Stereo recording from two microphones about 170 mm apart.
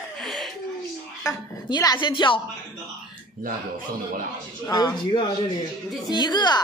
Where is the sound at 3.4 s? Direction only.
55° right (ahead or behind).